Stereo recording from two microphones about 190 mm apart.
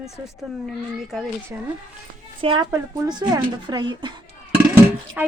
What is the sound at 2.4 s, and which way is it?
A woman's voice, 30° right (ahead or behind).